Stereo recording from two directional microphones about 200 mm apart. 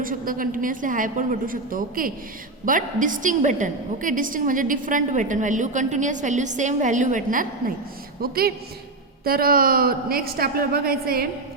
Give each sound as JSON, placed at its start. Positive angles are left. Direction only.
{"t": 0.0, "sound": "a woman's voice", "side_deg": -45}